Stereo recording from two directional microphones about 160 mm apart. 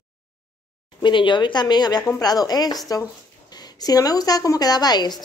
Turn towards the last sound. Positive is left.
turn(degrees=25)  # may be behind; listen again after turning